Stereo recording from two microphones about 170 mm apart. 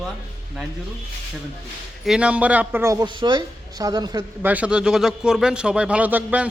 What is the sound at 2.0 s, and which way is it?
Speech, 5° right (ahead or behind).